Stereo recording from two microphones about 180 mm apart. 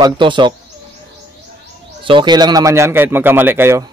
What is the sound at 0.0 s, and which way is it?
Speech, 25° right (ahead or behind).